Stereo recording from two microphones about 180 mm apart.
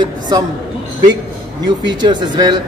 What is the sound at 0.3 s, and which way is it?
Speech, 20° right (ahead or behind).